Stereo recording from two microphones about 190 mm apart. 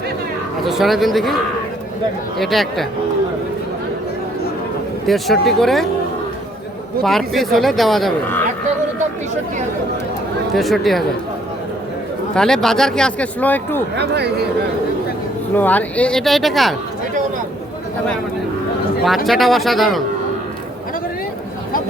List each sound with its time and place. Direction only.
0.6 s speech: centre (ahead or behind)
2.4 s speech: centre (ahead or behind)
5.0 s speech: centre (ahead or behind)
7.0 s speech: centre (ahead or behind)
10.5 s speech: centre (ahead or behind)
12.3 s speech: 5° left (ahead or behind)
13.9 s speech: 60° right (ahead or behind)
15.5 s speech: 10° left (ahead or behind)
19.0 s speech: centre (ahead or behind)